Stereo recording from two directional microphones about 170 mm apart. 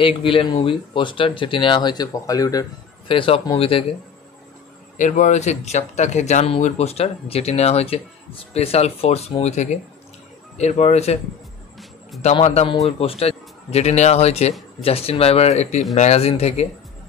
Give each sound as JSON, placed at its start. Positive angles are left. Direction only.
{"t": 0.0, "sound": "speech", "side_deg": 30}
{"t": 3.1, "sound": "speech", "side_deg": 30}
{"t": 4.9, "sound": "speech", "side_deg": 50}
{"t": 12.2, "sound": "a man's voice", "side_deg": 40}